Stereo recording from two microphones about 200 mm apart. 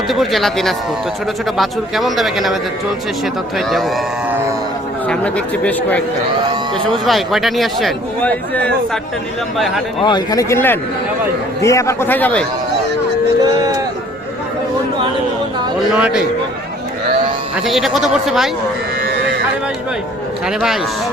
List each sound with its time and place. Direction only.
0.1 s speech: centre (ahead or behind)
3.7 s speech: centre (ahead or behind)
7.0 s speech: centre (ahead or behind)
10.0 s speech: 20° left (ahead or behind)
16.0 s a man's voice: 5° right (ahead or behind)
17.7 s speech: centre (ahead or behind)